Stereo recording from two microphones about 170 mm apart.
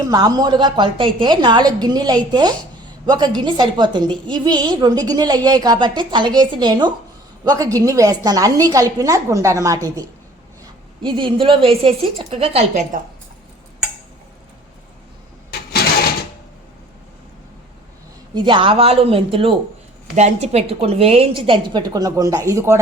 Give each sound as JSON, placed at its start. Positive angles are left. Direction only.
{"t": 0.0, "sound": "a woman's voice", "side_deg": -20}
{"t": 18.3, "sound": "a woman's voice", "side_deg": -30}